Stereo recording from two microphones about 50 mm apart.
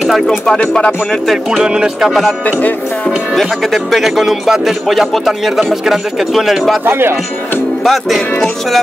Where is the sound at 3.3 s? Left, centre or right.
Centre.